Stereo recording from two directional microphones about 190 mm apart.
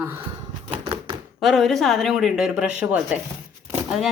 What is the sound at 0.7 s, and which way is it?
Typewriter, 25° right (ahead or behind).